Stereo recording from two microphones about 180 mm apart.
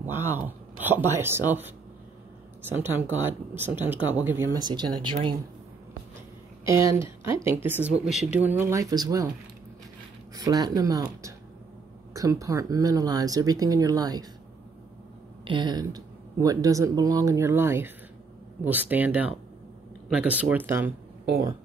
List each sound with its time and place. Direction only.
0.0 s speech: 10° right (ahead or behind)
2.7 s speech: 10° right (ahead or behind)
4.6 s speech: 25° right (ahead or behind)
6.6 s speech: 15° right (ahead or behind)
10.3 s speech: 20° right (ahead or behind)
15.4 s speech: 25° right (ahead or behind)